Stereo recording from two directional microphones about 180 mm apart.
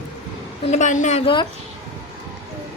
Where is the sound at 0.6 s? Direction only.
40° left (ahead or behind).